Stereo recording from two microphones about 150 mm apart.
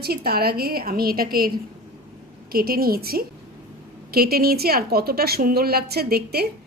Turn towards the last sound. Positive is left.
turn(degrees=-90)